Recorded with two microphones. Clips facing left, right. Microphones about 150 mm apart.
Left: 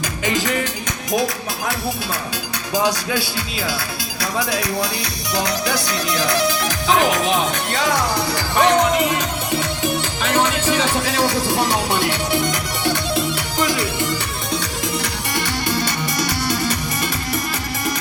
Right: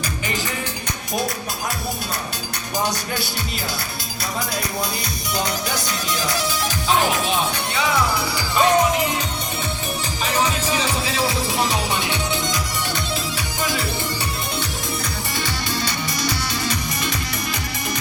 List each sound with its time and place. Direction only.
6.7 s music: 90° left
8.4 s speech: 70° left (ahead or behind)
10.5 s music: 65° left (ahead or behind)
15.0 s music: 65° left (ahead or behind)